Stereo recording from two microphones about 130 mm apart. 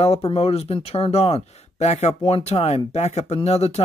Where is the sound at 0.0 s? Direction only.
50° left (ahead or behind).